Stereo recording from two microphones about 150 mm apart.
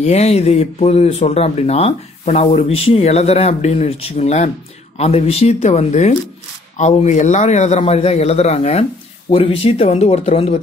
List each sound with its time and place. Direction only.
0.0 s speech: 45° left (ahead or behind)